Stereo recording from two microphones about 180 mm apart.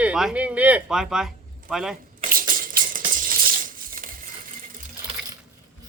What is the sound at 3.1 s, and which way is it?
Coin, 50° right (ahead or behind).